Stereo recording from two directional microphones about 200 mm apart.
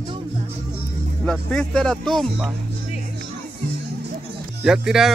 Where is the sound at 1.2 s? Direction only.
5° left (ahead or behind).